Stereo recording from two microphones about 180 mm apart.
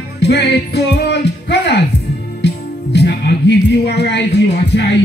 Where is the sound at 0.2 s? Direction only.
70° left (ahead or behind).